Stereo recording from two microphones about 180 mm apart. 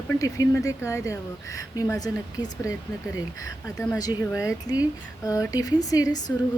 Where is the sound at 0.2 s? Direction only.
20° left (ahead or behind).